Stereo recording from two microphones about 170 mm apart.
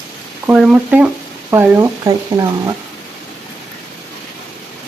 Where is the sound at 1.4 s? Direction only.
20° right (ahead or behind).